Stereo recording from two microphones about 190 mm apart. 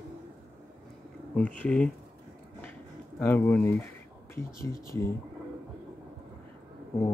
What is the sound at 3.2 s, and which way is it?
Speech, 10° left (ahead or behind).